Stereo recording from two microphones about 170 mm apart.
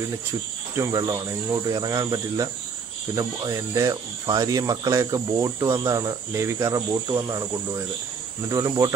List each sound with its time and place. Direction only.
0.7 s speech: 20° right (ahead or behind)